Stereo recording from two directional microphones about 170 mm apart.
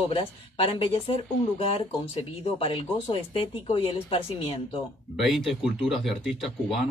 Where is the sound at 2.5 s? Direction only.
30° left (ahead or behind).